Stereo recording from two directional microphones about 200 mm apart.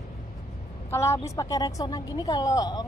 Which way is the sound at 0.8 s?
15° left (ahead or behind).